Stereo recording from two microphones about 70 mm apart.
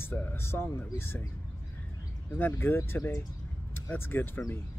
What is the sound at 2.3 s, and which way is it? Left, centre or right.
Speech, left.